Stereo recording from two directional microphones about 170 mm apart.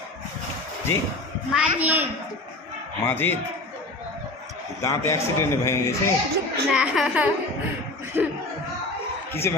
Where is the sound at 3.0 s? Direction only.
15° left (ahead or behind).